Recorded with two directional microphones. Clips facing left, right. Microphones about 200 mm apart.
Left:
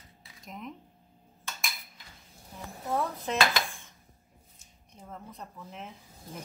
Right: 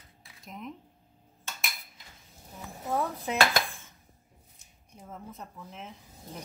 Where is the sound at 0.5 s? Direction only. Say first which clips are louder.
Right 1 dB; centre (ahead or behind).